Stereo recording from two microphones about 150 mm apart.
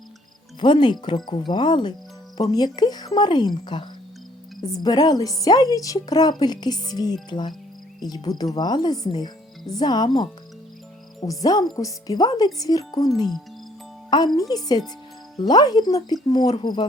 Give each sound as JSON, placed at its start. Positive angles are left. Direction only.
{"t": 0.6, "sound": "speech", "side_deg": 30}
{"t": 14.3, "sound": "speech", "side_deg": 25}